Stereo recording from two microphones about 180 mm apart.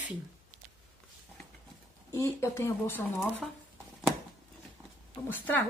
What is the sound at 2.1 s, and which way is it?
Speech, 15° left (ahead or behind).